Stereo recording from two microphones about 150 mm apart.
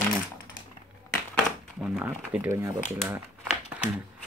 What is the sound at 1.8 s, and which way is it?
Speech, 5° right (ahead or behind).